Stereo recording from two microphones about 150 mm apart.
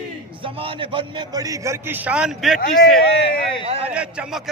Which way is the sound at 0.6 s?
35° right (ahead or behind).